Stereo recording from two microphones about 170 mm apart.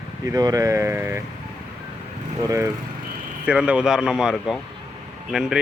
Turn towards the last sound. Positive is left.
turn(degrees=0)  # may be behind; listen again after turning